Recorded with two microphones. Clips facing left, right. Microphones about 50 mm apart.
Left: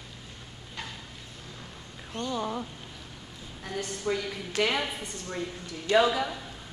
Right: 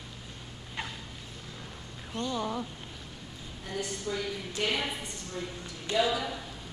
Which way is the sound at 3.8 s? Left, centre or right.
Left.